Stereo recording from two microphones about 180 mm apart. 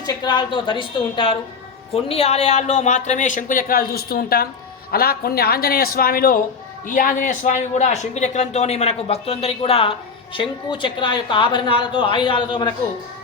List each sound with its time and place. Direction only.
0.0 s a woman's voice: 25° left (ahead or behind)